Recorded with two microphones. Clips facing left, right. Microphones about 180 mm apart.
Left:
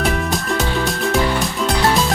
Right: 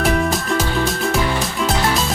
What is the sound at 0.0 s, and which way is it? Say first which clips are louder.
Music: right 2 dB; centre (ahead or behind).